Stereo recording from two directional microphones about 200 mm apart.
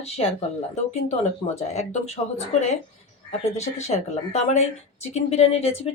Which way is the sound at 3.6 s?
35° left (ahead or behind).